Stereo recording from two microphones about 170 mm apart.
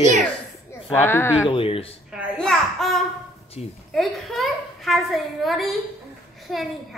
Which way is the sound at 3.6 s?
35° left (ahead or behind).